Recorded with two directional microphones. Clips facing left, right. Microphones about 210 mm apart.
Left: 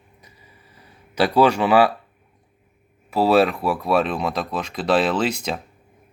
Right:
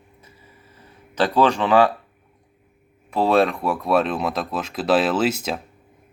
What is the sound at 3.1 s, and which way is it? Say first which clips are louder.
Speech: left 1 dB; 5° left (ahead or behind).